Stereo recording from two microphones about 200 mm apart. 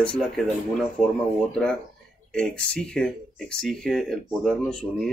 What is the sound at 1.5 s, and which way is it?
Speech, 5° left (ahead or behind).